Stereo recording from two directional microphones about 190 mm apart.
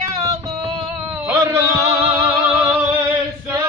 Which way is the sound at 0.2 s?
20° right (ahead or behind).